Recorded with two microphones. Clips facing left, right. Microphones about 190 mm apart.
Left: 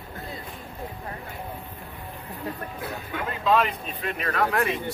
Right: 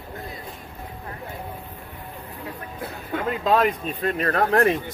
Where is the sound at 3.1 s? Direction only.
40° right (ahead or behind).